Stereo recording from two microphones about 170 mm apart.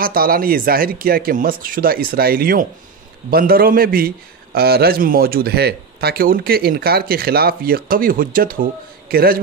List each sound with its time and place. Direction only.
0.0 s speech: 60° right (ahead or behind)